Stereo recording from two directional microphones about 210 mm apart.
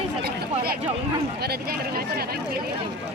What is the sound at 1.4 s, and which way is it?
Speech, 45° right (ahead or behind).